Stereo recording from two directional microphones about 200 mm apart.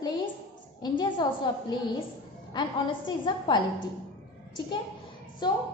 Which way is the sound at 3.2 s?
25° left (ahead or behind).